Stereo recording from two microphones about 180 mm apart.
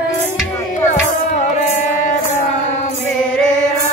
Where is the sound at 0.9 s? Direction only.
40° left (ahead or behind).